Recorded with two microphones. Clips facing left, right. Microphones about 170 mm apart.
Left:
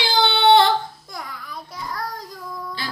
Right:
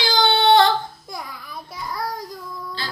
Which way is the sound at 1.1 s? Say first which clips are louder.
Even; 10° right (ahead or behind).